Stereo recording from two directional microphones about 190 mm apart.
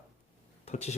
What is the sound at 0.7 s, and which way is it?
Speech, 35° left (ahead or behind).